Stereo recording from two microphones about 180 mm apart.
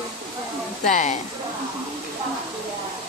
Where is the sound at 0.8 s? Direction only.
40° left (ahead or behind).